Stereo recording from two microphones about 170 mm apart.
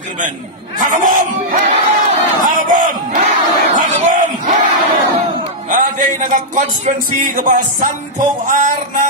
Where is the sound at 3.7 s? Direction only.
50° right (ahead or behind).